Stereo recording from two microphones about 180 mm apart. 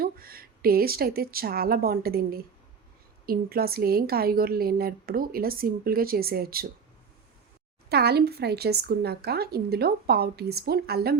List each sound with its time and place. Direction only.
0.0 s a woman's voice: 55° right (ahead or behind)
7.9 s a woman's voice: 65° right (ahead or behind)